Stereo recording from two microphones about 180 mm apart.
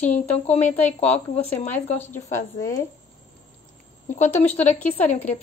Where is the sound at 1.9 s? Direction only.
10° left (ahead or behind).